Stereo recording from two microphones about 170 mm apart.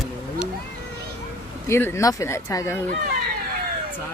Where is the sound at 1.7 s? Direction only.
15° left (ahead or behind).